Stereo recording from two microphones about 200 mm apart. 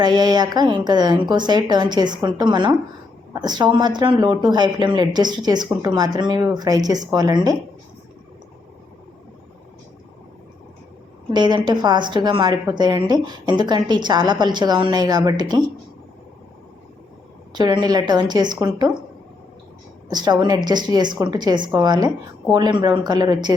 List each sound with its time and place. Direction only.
0.0 s a woman's voice: 20° right (ahead or behind)
11.3 s a woman's voice: 20° right (ahead or behind)
17.5 s a woman's voice: 20° right (ahead or behind)
20.1 s a woman's voice: 20° right (ahead or behind)